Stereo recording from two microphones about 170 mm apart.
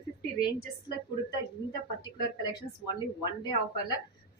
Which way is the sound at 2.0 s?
25° left (ahead or behind).